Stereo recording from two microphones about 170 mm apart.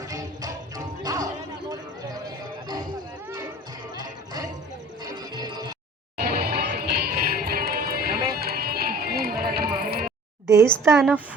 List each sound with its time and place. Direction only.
0.0 s music: 20° right (ahead or behind)
1.7 s a sound: 20° right (ahead or behind)
3.9 s music: 20° right (ahead or behind)
6.1 s music: 65° right (ahead or behind)
10.4 s a woman's voice: 20° right (ahead or behind)